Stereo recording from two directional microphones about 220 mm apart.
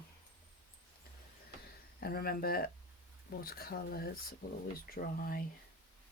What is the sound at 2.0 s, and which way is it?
Speech, 45° left (ahead or behind).